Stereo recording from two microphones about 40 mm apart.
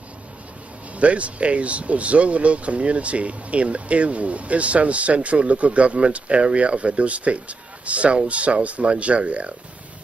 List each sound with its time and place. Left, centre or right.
0.9 s speech: right